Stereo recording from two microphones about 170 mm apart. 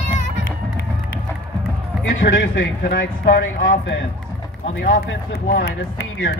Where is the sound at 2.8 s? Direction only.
70° left (ahead or behind).